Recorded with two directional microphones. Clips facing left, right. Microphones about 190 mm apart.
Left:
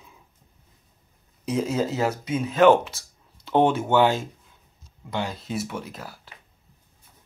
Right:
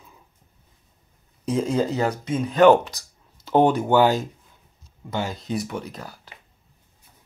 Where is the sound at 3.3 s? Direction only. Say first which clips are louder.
Right 2 dB; 5° right (ahead or behind).